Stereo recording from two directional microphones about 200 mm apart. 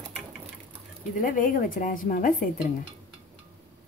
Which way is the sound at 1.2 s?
45° left (ahead or behind).